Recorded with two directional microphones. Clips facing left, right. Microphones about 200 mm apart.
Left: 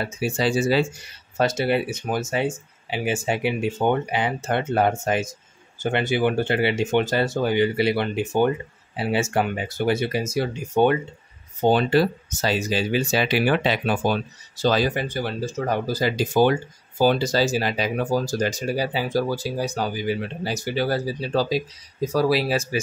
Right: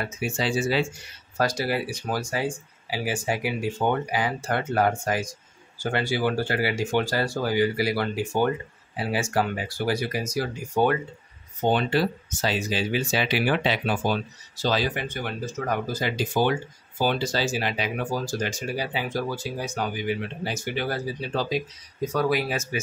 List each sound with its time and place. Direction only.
0.0 s speech: 35° left (ahead or behind)
1.4 s speech: 25° left (ahead or behind)
11.6 s speech: 40° left (ahead or behind)